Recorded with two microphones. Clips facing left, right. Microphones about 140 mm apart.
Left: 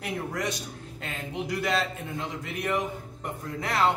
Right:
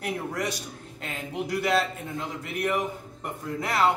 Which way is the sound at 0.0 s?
Centre (ahead or behind).